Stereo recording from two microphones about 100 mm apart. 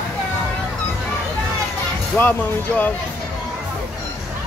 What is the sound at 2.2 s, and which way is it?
Speech, 15° left (ahead or behind).